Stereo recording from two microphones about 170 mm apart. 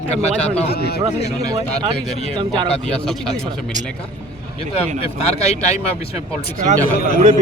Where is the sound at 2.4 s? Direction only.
30° right (ahead or behind).